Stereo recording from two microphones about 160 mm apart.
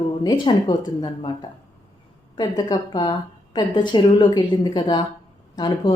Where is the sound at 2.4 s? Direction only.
25° left (ahead or behind).